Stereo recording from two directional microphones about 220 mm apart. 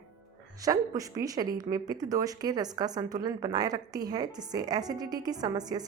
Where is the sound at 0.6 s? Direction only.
15° right (ahead or behind).